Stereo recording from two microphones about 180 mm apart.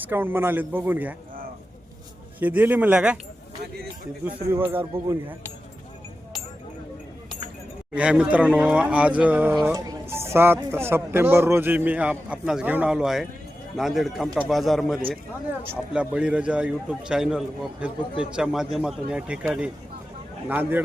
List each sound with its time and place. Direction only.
0.0 s speech: 10° right (ahead or behind)
2.4 s speech: 10° right (ahead or behind)
4.5 s speech: 10° right (ahead or behind)
7.9 s speech: 5° right (ahead or behind)
9.7 s a man's voice: 20° right (ahead or behind)